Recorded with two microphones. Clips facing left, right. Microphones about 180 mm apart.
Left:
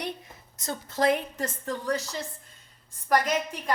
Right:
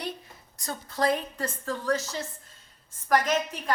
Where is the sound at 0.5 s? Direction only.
20° left (ahead or behind).